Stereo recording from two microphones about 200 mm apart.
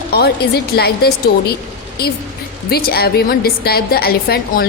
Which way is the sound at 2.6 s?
50° left (ahead or behind).